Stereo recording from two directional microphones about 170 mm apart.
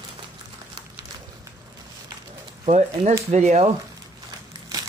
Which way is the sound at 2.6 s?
40° right (ahead or behind).